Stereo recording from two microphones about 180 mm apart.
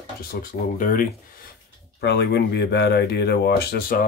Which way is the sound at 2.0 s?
65° left (ahead or behind).